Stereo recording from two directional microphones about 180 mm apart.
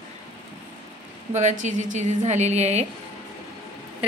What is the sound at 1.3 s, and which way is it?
A woman's voice, 40° right (ahead or behind).